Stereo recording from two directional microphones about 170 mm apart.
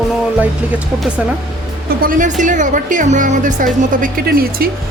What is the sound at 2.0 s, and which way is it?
A woman's voice, 50° right (ahead or behind).